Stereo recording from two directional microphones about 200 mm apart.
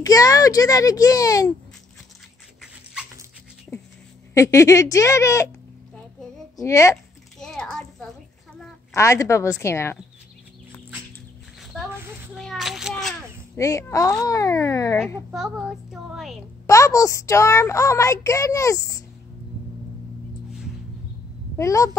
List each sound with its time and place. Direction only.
0.0 s a child's voice: 15° left (ahead or behind)
2.6 s dog: 5° right (ahead or behind)
4.3 s a child's voice: 15° left (ahead or behind)
6.5 s a woman's voice: 15° left (ahead or behind)
7.3 s a sound: 5° left (ahead or behind)
8.9 s a child's voice: 15° left (ahead or behind)
12.4 s a sound: centre (ahead or behind)
13.6 s a child's voice: 15° left (ahead or behind)
15.3 s speech: 5° right (ahead or behind)
16.6 s a child's voice: 15° left (ahead or behind)
21.5 s a child's voice: 15° left (ahead or behind)